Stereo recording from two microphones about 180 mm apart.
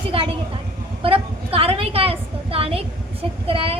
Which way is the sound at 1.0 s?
30° right (ahead or behind).